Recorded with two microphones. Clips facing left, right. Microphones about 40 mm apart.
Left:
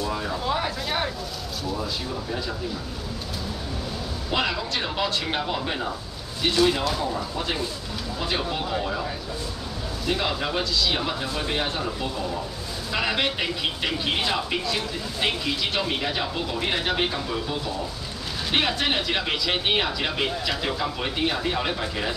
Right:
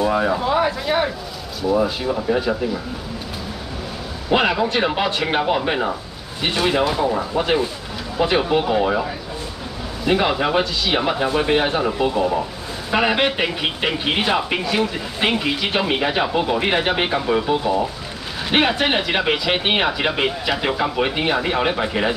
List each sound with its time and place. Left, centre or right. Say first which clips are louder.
0.0 s speech: right 10 dB; right
0.5 s speech: right 7 dB; centre
1.7 s speech: right 12 dB; right
4.3 s speech: right 9 dB; right
10.0 s speech: right 8 dB; right